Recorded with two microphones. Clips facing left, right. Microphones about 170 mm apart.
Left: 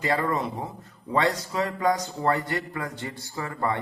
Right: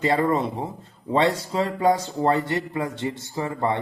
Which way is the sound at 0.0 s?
25° right (ahead or behind).